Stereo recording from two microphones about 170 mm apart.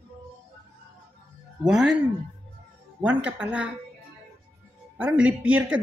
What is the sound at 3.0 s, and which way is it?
Speech, 10° right (ahead or behind).